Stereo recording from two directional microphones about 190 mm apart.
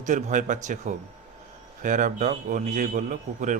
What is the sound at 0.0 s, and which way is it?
A man's voice, 40° right (ahead or behind).